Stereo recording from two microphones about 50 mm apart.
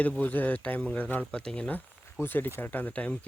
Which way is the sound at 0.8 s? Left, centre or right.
Left.